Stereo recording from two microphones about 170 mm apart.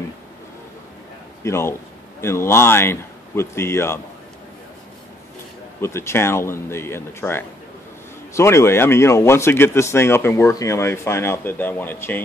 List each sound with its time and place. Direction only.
1.4 s speech: 15° left (ahead or behind)
5.8 s speech: 15° left (ahead or behind)